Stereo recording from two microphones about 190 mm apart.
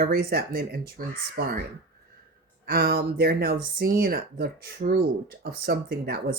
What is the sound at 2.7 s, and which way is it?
Speech, 50° right (ahead or behind).